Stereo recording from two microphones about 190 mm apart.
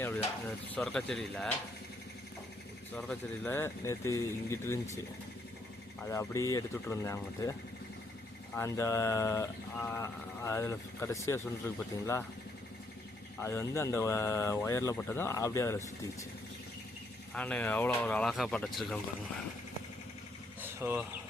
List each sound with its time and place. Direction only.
0.7 s speech: 5° left (ahead or behind)
2.9 s speech: 10° left (ahead or behind)
6.0 s speech: 15° left (ahead or behind)
8.5 s speech: 15° left (ahead or behind)
13.4 s speech: 15° left (ahead or behind)
17.3 s speech: 5° left (ahead or behind)
20.6 s vehicle: 10° right (ahead or behind)